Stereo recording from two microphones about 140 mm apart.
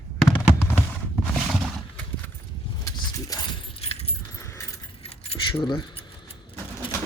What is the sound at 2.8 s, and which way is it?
Keys jangling, 30° left (ahead or behind).